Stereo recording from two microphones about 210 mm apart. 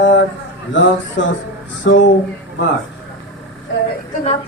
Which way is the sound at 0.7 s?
60° left (ahead or behind).